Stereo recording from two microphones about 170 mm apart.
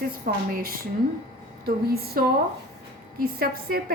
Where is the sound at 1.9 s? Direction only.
65° right (ahead or behind).